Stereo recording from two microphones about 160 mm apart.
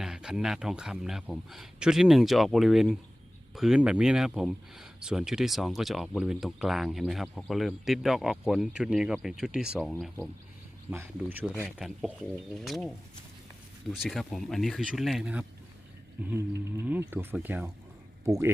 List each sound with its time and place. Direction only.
0.0 s speech: 5° right (ahead or behind)
10.9 s speech: 10° right (ahead or behind)
13.9 s speech: centre (ahead or behind)
16.7 s speech: 15° right (ahead or behind)
18.3 s speech: 20° right (ahead or behind)